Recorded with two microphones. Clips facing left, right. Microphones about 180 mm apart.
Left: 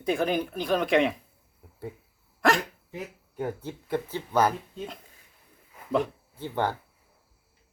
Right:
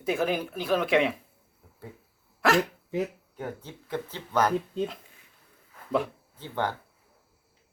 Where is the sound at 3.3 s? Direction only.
10° left (ahead or behind).